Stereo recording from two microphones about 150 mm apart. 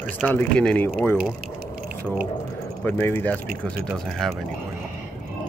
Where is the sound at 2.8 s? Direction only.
15° left (ahead or behind).